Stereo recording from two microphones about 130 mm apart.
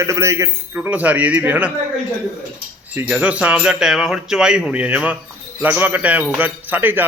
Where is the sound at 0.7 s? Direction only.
10° right (ahead or behind).